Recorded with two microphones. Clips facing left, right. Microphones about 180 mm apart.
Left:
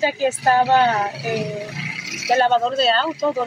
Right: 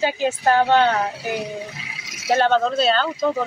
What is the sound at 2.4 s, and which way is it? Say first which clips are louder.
Speech: even; 5° left (ahead or behind).